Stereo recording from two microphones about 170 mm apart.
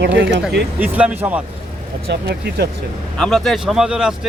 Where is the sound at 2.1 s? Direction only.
70° right (ahead or behind).